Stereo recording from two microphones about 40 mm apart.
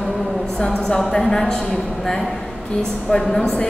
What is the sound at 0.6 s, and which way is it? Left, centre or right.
A woman's voice, centre.